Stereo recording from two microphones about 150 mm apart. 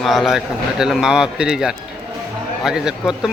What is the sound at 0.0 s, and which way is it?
Speech, centre (ahead or behind).